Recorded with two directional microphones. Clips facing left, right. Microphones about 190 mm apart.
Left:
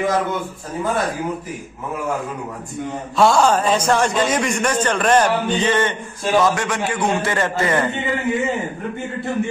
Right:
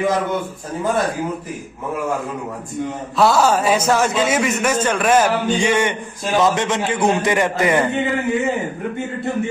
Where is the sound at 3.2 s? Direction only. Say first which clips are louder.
Even; 5° right (ahead or behind).